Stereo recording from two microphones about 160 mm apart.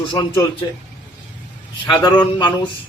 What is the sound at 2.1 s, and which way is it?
Speech, 30° left (ahead or behind).